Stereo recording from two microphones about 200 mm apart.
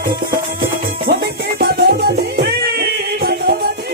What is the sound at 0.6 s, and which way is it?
Music, 55° right (ahead or behind).